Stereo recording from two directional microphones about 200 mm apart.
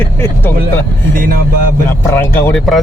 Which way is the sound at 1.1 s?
45° right (ahead or behind).